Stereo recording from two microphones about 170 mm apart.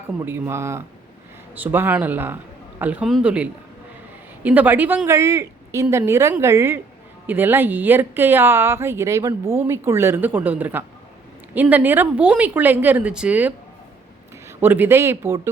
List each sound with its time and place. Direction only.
0.3 s speech: 15° right (ahead or behind)
14.6 s speech: 10° right (ahead or behind)